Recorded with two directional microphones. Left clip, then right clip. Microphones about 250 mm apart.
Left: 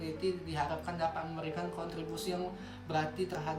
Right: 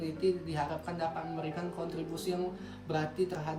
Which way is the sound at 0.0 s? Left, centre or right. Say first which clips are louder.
Right 4 dB; centre.